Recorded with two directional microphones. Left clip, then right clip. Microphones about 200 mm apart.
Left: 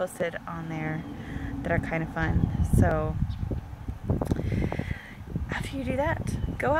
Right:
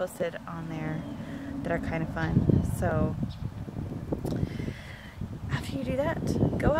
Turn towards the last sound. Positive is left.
turn(degrees=10)  # may be behind; listen again after turning